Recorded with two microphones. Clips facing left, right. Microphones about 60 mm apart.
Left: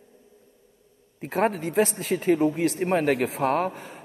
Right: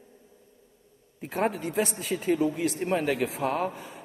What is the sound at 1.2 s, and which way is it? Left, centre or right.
A man's voice, left.